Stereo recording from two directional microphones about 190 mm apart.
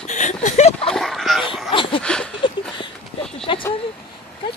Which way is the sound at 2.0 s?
5° left (ahead or behind).